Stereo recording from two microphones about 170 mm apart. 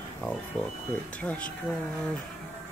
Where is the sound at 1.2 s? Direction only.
10° left (ahead or behind).